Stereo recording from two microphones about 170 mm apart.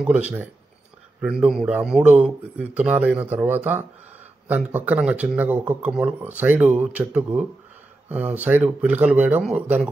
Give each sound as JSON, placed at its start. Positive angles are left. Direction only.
{"t": 0.0, "sound": "speech", "side_deg": -10}